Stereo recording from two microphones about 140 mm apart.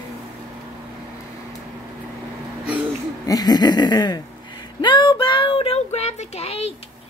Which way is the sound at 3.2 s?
30° left (ahead or behind).